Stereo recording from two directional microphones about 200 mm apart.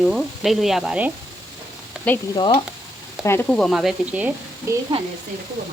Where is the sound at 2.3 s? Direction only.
20° left (ahead or behind).